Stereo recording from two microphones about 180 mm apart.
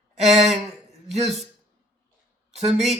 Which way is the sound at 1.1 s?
40° right (ahead or behind).